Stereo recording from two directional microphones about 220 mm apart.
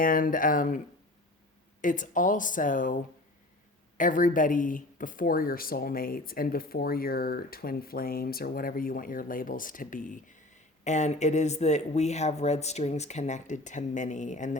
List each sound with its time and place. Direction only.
0.0 s speech: 40° left (ahead or behind)
1.8 s speech: 35° left (ahead or behind)